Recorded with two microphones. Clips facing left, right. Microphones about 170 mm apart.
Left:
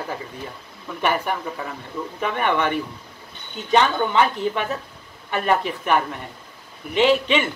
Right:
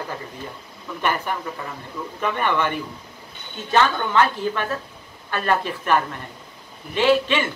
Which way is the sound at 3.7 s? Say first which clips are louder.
Left 1 dB; 15° left (ahead or behind).